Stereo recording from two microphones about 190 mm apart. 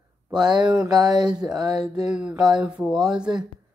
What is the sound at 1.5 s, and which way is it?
Speech, 20° right (ahead or behind).